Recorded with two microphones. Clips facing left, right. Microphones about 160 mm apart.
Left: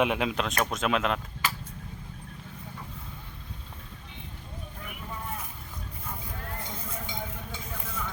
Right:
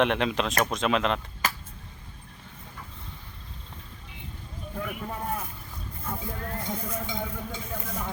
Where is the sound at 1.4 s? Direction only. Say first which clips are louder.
Right 2 dB; 45° right (ahead or behind).